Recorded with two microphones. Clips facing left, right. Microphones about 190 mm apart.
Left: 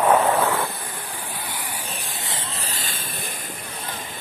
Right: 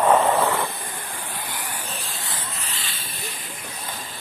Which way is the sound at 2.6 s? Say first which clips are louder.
Left 3 dB; 40° left (ahead or behind).